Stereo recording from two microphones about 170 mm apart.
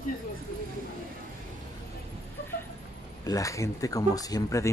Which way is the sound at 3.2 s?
20° left (ahead or behind).